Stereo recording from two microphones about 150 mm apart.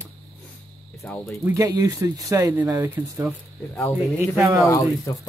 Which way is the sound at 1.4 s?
20° right (ahead or behind).